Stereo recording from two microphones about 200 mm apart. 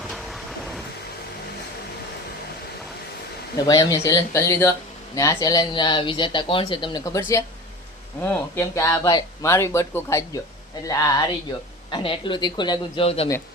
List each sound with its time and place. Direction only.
0.1 s vehicle: centre (ahead or behind)
3.7 s speech: 15° left (ahead or behind)